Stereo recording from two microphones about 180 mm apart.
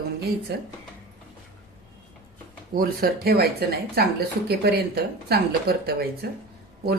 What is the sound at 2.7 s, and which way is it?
Speech, 60° right (ahead or behind).